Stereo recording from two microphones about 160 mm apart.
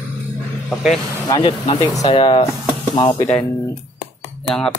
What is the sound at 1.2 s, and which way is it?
Speech, 30° left (ahead or behind).